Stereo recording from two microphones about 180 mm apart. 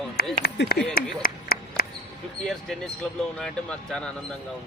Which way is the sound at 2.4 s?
5° left (ahead or behind).